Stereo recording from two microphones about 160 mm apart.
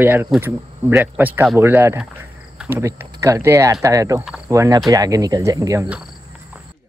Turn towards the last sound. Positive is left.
turn(degrees=-20)  # may be behind; listen again after turning